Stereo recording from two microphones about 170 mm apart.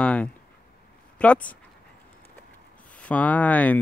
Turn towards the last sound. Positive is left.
turn(degrees=10)  # may be behind; listen again after turning